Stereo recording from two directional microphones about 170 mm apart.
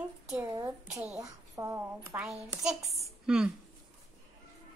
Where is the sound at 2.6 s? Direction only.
Centre (ahead or behind).